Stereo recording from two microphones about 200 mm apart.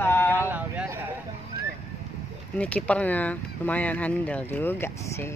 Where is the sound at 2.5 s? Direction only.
5° left (ahead or behind).